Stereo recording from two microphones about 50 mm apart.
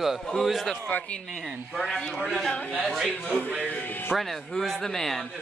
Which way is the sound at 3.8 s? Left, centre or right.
Left.